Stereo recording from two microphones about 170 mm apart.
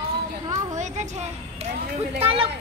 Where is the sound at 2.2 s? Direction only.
35° right (ahead or behind).